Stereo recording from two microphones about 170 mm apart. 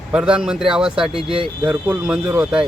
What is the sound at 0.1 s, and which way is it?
Speech, 5° right (ahead or behind).